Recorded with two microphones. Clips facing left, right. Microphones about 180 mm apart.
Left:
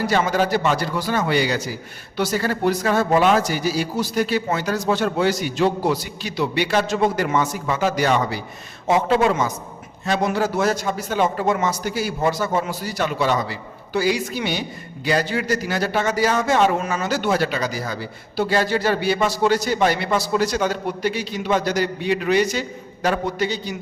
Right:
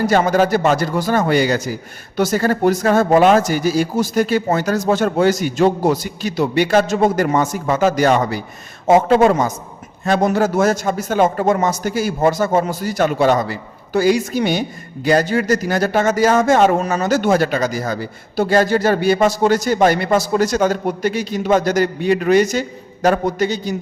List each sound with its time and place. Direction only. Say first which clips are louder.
0.0 s a man's voice: right 5 dB; 45° right (ahead or behind)